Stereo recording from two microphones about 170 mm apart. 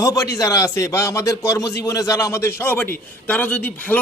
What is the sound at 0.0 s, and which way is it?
A man's voice, 20° left (ahead or behind).